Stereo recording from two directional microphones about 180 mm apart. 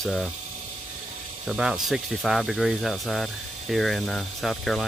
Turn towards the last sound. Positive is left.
turn(degrees=0)  # may be behind; listen again after turning